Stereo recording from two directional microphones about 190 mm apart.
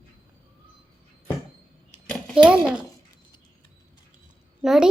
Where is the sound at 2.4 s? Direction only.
5° right (ahead or behind).